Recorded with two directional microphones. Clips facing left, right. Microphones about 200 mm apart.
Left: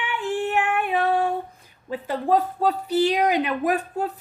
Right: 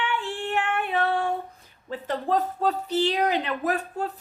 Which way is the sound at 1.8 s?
10° left (ahead or behind).